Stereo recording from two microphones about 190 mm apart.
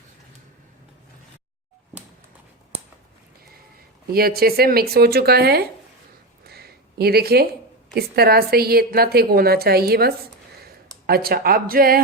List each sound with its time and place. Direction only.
4.0 s speech: 55° right (ahead or behind)
6.4 s a sound: 55° right (ahead or behind)
7.9 s a woman's voice: 55° right (ahead or behind)